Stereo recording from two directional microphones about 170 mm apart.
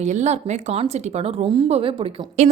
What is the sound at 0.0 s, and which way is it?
A woman's voice, 45° right (ahead or behind).